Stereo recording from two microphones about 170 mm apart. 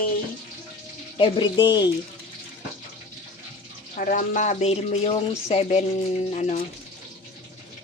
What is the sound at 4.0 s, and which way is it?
Speech, 50° left (ahead or behind).